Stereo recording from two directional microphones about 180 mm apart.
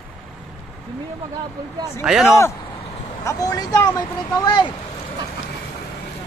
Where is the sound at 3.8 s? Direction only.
10° left (ahead or behind).